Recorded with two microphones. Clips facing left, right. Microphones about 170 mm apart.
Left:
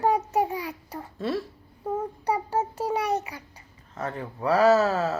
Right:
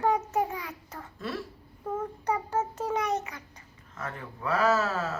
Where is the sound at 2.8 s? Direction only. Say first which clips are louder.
Left 3 dB; 30° left (ahead or behind).